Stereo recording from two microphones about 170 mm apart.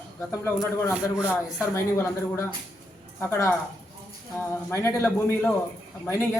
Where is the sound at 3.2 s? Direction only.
15° left (ahead or behind).